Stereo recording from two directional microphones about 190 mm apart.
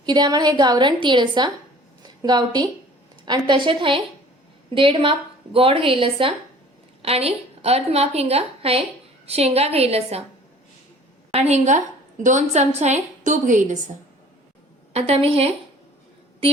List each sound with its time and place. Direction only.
0.0 s a woman's voice: 20° right (ahead or behind)
11.3 s a woman's voice: 35° right (ahead or behind)
14.9 s a woman's voice: 35° right (ahead or behind)